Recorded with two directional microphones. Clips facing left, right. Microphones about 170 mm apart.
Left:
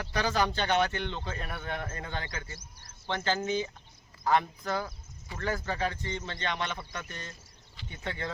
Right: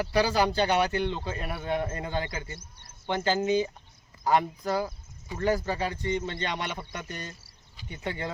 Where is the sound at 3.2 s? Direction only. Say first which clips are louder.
Right 5 dB; 15° right (ahead or behind).